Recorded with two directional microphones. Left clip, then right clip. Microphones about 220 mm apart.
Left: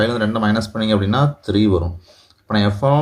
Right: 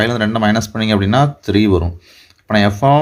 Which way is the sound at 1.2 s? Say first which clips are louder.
Right 4 dB; 90° right.